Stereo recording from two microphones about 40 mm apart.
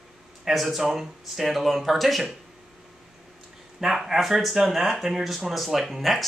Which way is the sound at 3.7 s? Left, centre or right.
Centre.